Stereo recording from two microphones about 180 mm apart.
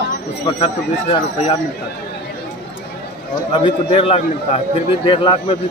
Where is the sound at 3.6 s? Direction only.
30° left (ahead or behind).